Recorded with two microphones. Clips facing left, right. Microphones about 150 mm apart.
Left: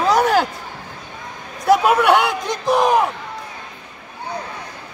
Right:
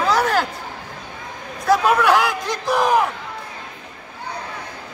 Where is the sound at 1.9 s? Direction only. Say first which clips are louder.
Left 2 dB; 25° left (ahead or behind).